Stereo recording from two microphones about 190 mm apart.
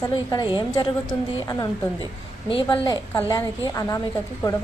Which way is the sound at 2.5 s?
25° left (ahead or behind).